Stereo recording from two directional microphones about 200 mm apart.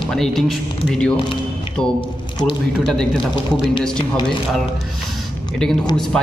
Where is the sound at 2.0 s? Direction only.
25° left (ahead or behind).